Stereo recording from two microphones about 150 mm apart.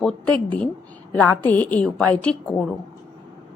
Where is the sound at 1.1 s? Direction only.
10° left (ahead or behind).